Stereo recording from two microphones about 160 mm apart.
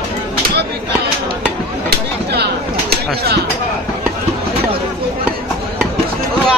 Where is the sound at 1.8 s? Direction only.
85° right.